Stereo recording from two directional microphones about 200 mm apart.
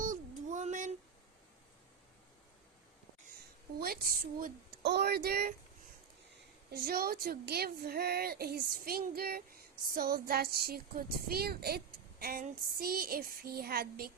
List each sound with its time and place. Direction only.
0.0 s a sound: 40° right (ahead or behind)
3.8 s a woman's voice: 50° right (ahead or behind)
6.7 s a woman's voice: 50° right (ahead or behind)